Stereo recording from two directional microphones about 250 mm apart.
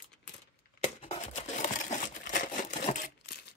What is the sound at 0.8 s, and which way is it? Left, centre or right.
Crumpling, left.